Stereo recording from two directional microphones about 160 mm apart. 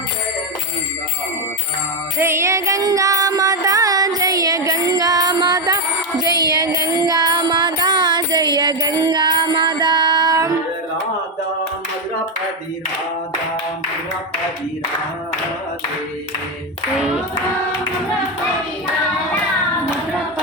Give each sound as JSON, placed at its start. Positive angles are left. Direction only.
{"t": 2.1, "sound": "music", "side_deg": -15}
{"t": 17.0, "sound": "singing", "side_deg": -5}